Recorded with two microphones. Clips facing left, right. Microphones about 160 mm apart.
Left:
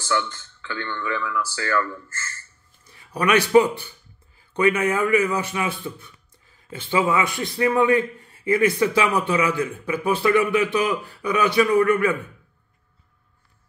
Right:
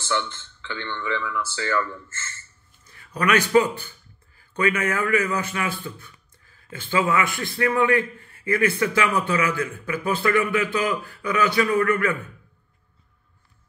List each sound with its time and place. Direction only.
0.1 s speech: 20° right (ahead or behind)
3.3 s a man's voice: 15° left (ahead or behind)